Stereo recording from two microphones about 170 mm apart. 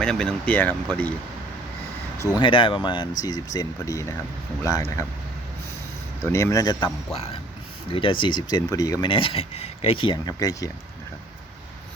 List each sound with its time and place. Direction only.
0.0 s speech: 5° left (ahead or behind)
2.4 s speech: 30° left (ahead or behind)
6.2 s speech: 15° left (ahead or behind)